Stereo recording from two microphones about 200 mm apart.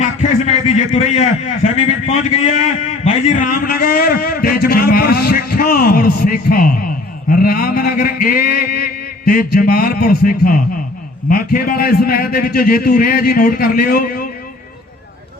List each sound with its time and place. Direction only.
0.0 s a man's voice: 35° left (ahead or behind); by 14.3 s 50° left (ahead or behind)